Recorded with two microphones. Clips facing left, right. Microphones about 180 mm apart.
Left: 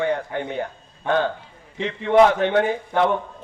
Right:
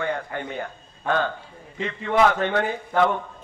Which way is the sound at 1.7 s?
20° left (ahead or behind).